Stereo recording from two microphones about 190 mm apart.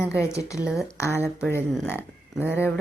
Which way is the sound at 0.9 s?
15° left (ahead or behind).